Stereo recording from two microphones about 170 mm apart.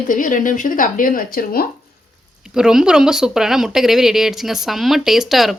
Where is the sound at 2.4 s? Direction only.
5° right (ahead or behind).